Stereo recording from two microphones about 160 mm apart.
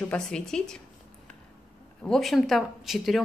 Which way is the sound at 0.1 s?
5° left (ahead or behind).